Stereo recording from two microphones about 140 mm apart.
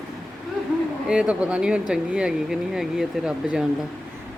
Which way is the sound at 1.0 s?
10° right (ahead or behind).